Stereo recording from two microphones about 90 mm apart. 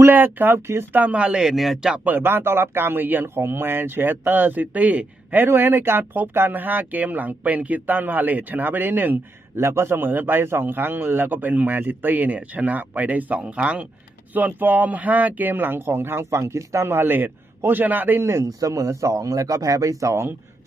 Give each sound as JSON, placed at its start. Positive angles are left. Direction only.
{"t": 0.0, "sound": "speech", "side_deg": -20}
{"t": 1.9, "sound": "speech", "side_deg": -20}